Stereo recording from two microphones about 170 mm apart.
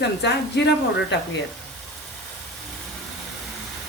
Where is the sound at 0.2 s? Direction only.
85° left.